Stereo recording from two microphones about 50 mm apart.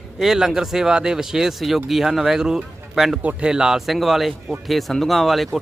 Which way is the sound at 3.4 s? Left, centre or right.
Centre.